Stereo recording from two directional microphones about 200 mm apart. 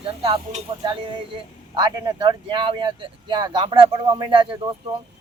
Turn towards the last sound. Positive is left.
turn(degrees=-25)  # may be behind; listen again after turning